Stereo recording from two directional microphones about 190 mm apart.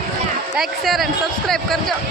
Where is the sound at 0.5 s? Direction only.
Centre (ahead or behind).